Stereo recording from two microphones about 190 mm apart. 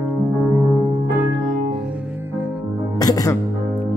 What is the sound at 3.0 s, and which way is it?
Speech, 20° left (ahead or behind).